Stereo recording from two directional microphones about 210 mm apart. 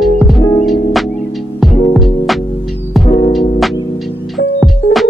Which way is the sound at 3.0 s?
30° left (ahead or behind).